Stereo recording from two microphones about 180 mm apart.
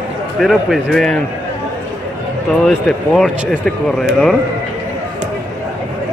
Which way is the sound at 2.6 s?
Centre (ahead or behind).